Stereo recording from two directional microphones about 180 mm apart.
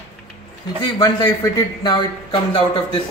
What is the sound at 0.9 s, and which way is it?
A man's voice, 20° left (ahead or behind).